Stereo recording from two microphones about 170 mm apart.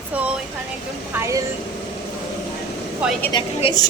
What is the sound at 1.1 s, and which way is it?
Speech, 10° right (ahead or behind).